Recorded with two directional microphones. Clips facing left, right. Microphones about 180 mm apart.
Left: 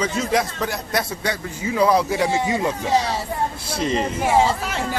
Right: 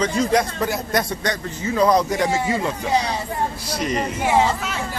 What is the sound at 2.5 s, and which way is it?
Speech, 20° left (ahead or behind).